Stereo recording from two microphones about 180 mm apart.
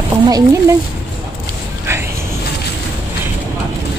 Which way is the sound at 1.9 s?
15° right (ahead or behind).